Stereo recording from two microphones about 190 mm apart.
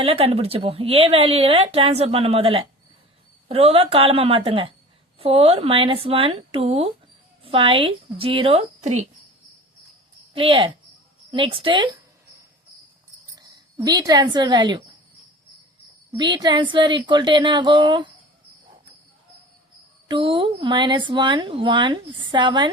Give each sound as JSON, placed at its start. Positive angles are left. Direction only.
{"t": 0.0, "sound": "speech", "side_deg": -30}
{"t": 10.3, "sound": "speech", "side_deg": -30}
{"t": 13.4, "sound": "a woman's voice", "side_deg": -20}
{"t": 16.1, "sound": "speech", "side_deg": -25}
{"t": 20.1, "sound": "speech", "side_deg": -25}